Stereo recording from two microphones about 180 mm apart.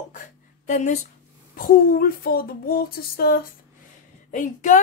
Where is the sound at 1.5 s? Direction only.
55° left (ahead or behind).